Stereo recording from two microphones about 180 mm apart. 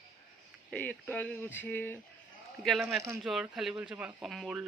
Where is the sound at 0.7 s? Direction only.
10° left (ahead or behind).